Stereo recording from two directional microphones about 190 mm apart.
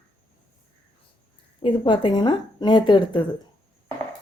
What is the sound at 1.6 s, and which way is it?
A woman's voice, 25° left (ahead or behind).